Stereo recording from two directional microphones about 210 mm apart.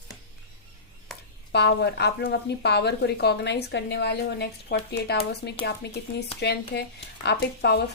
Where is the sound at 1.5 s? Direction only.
50° left (ahead or behind).